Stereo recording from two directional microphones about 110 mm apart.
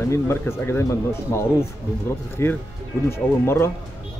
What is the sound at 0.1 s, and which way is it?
Speech, 25° left (ahead or behind).